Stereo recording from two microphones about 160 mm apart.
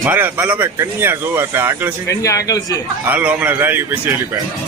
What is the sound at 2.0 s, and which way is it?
Speech, 20° left (ahead or behind).